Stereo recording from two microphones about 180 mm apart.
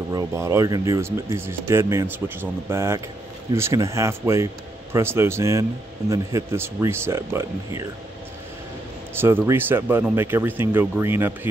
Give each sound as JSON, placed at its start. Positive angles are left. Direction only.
{"t": 0.1, "sound": "speech", "side_deg": -15}
{"t": 9.2, "sound": "speech", "side_deg": -10}